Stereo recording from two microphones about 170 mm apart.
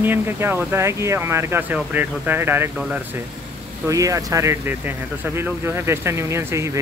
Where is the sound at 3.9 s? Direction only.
20° right (ahead or behind).